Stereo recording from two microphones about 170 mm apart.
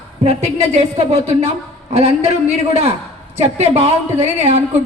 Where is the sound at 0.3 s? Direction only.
40° right (ahead or behind).